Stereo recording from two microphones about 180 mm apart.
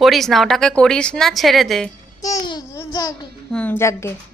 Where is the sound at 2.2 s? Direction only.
20° left (ahead or behind).